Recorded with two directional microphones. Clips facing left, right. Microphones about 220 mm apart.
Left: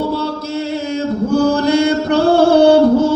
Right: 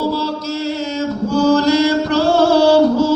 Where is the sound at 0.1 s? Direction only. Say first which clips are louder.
Left 1 dB; 55° left (ahead or behind).